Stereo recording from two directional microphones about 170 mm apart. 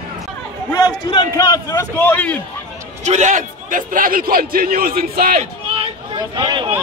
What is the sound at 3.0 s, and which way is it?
A man's voice, 45° right (ahead or behind).